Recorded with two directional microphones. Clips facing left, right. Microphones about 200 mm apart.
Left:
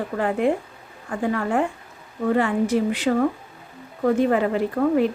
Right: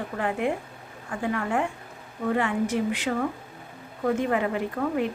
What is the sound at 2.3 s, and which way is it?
Speech, 35° left (ahead or behind).